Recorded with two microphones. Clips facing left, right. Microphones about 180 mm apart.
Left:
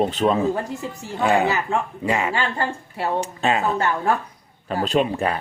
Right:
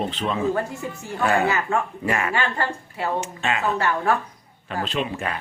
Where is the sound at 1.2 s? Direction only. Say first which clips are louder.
Left 2 dB; 15° left (ahead or behind).